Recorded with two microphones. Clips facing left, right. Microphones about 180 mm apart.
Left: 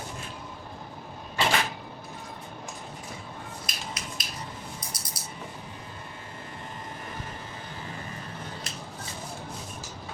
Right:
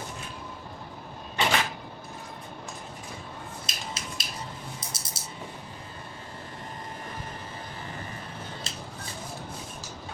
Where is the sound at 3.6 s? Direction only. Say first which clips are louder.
Even; 25° right (ahead or behind).